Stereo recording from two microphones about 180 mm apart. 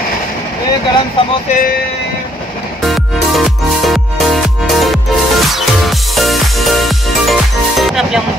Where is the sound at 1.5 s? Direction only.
50° left (ahead or behind).